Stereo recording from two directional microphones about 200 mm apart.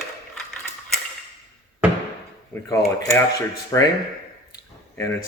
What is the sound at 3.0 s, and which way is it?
Speech, 15° left (ahead or behind).